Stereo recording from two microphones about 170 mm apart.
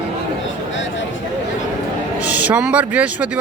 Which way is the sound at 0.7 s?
90° left.